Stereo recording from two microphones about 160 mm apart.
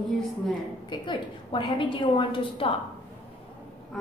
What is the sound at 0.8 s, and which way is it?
A woman's voice, 30° left (ahead or behind).